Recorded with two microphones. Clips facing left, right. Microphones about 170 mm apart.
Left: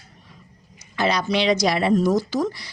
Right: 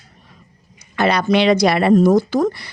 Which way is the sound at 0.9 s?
60° right (ahead or behind).